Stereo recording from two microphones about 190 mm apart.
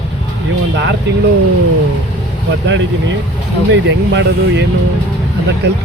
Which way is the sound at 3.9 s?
70° right (ahead or behind).